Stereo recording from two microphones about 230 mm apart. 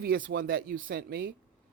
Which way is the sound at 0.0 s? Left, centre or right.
Right.